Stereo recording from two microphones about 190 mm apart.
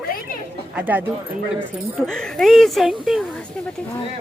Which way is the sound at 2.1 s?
Centre (ahead or behind).